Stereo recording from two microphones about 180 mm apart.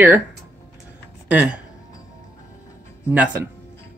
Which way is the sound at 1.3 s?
5° right (ahead or behind).